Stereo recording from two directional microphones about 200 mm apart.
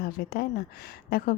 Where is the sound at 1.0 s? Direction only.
45° left (ahead or behind).